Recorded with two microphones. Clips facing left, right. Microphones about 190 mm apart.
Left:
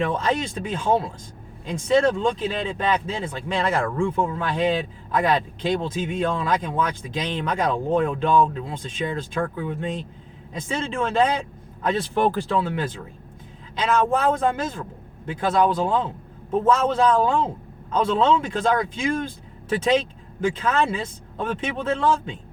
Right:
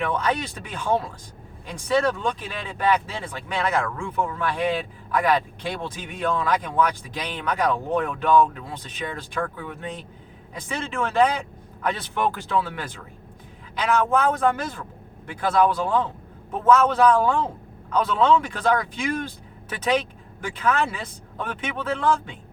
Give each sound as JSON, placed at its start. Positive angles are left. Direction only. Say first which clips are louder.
{"t": 0.1, "sound": "speech", "louder": "left 1 dB", "side_deg": 25}